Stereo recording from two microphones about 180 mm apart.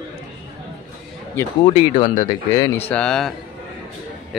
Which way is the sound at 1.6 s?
30° left (ahead or behind).